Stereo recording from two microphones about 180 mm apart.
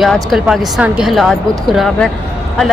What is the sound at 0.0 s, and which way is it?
Speech, centre (ahead or behind).